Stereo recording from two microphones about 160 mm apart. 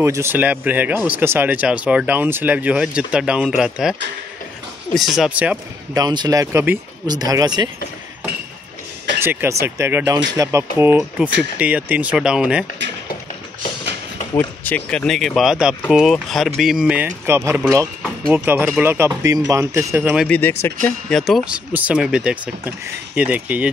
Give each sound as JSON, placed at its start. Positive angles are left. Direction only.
{"t": 0.0, "sound": "speech", "side_deg": -15}
{"t": 4.9, "sound": "speech", "side_deg": 0}
{"t": 5.9, "sound": "speech", "side_deg": -25}
{"t": 9.2, "sound": "speech", "side_deg": -15}
{"t": 14.3, "sound": "speech", "side_deg": 10}
{"t": 20.2, "sound": "speech", "side_deg": 10}